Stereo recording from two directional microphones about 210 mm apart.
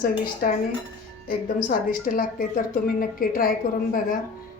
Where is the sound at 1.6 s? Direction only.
40° left (ahead or behind).